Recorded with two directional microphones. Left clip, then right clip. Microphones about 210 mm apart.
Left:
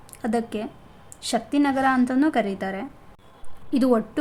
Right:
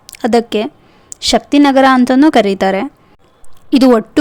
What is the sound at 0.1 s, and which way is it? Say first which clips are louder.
A woman's voice: right 14 dB; 45° right (ahead or behind).